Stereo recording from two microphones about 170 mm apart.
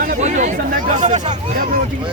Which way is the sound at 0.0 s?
50° right (ahead or behind).